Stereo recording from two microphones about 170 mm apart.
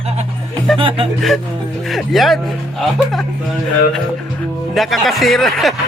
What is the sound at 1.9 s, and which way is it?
Speech, centre (ahead or behind).